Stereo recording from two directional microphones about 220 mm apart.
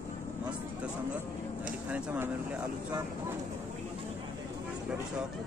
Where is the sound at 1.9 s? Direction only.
5° right (ahead or behind).